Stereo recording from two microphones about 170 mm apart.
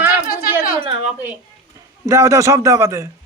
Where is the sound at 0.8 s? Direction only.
35° right (ahead or behind).